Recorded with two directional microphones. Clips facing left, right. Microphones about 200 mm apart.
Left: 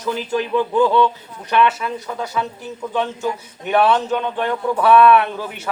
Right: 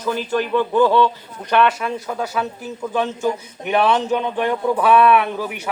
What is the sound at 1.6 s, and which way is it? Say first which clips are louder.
Speech: even; centre (ahead or behind).